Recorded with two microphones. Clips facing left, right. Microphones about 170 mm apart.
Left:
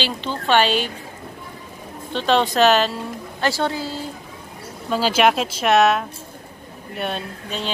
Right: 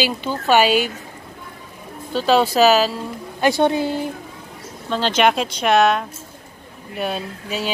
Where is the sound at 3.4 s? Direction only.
20° right (ahead or behind).